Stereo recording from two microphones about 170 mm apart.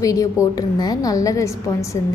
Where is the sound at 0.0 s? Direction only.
20° left (ahead or behind).